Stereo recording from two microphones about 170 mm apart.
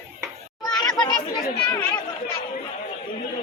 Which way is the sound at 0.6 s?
25° left (ahead or behind).